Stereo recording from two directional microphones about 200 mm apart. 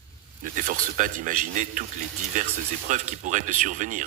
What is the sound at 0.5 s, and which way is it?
Speech, 40° right (ahead or behind).